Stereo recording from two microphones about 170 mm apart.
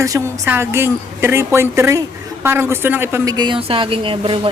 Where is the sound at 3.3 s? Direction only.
25° right (ahead or behind).